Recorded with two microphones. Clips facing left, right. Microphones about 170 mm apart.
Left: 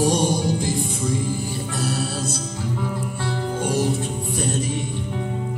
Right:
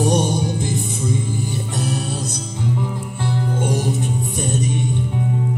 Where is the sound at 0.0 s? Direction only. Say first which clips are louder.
Right 1 dB; 25° right (ahead or behind).